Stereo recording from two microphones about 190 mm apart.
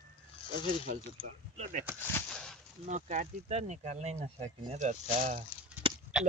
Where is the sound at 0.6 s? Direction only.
45° right (ahead or behind).